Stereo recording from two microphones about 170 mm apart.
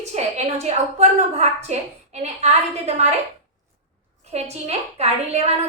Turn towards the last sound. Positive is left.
turn(degrees=-40)  # may be behind; listen again after turning